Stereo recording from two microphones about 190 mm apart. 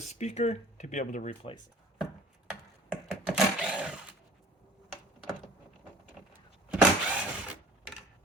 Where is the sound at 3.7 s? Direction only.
5° right (ahead or behind).